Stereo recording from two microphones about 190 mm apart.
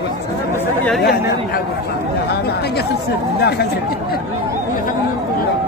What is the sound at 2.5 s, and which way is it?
Chatter, 60° left (ahead or behind).